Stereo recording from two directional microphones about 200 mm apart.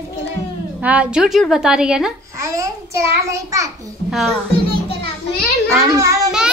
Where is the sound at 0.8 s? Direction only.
5° right (ahead or behind).